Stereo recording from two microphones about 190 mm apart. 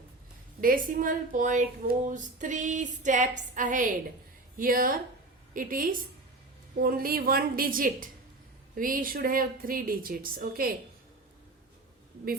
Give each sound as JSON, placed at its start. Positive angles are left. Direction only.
{"t": 0.6, "sound": "speech", "side_deg": -45}
{"t": 2.0, "sound": "a sound", "side_deg": -40}
{"t": 4.5, "sound": "speech", "side_deg": -50}